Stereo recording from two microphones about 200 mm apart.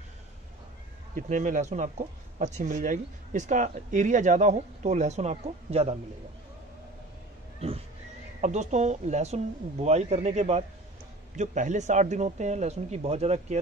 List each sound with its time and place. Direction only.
1.1 s speech: 40° right (ahead or behind)
7.6 s a sound: 30° right (ahead or behind)
8.4 s speech: 35° right (ahead or behind)